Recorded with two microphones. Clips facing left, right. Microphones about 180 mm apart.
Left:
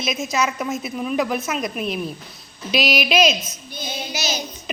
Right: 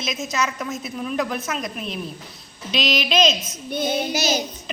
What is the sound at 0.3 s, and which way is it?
A woman's voice, 5° left (ahead or behind).